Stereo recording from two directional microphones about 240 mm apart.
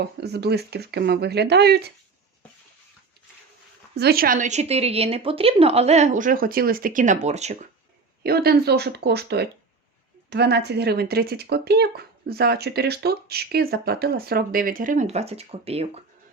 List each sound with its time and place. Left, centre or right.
0.0 s speech: right
3.9 s speech: right
8.2 s speech: right